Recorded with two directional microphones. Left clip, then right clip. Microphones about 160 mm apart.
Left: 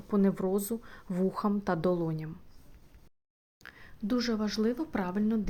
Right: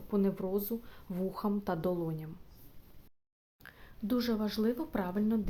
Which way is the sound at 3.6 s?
5° left (ahead or behind).